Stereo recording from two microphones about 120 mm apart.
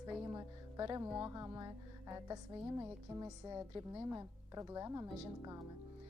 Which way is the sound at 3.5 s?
35° right (ahead or behind).